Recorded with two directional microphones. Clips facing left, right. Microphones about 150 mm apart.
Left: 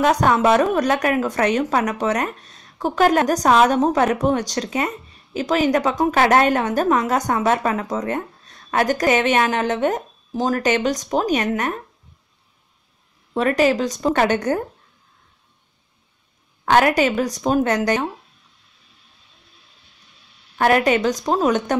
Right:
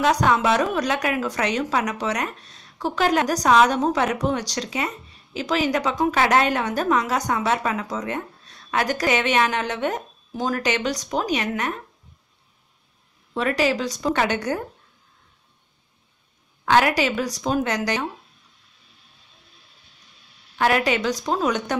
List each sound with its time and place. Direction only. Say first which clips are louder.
0.0 s a woman's voice: left 3 dB; 50° left (ahead or behind)
13.3 s a woman's voice: left 4 dB; 45° left (ahead or behind)
16.6 s a woman's voice: left 3 dB; 50° left (ahead or behind)
20.5 s a woman's voice: left 4 dB; 45° left (ahead or behind)